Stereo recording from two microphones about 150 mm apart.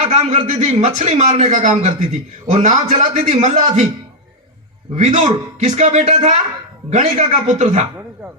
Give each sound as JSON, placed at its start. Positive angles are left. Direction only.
{"t": 0.0, "sound": "a man's voice", "side_deg": -45}
{"t": 4.9, "sound": "a man's voice", "side_deg": -45}